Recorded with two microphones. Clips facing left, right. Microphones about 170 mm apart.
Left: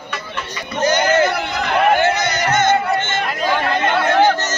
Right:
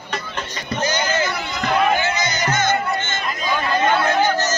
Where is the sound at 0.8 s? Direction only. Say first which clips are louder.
Left 7 dB; 60° left (ahead or behind).